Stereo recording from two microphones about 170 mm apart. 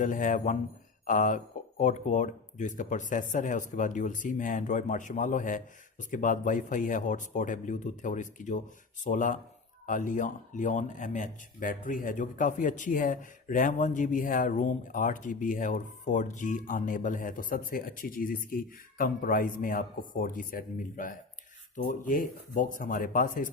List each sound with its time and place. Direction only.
0.0 s speech: 50° left (ahead or behind)